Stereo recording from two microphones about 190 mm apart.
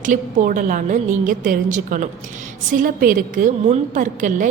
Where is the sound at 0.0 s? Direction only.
45° right (ahead or behind).